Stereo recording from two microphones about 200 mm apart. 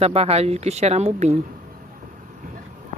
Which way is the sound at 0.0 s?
30° right (ahead or behind).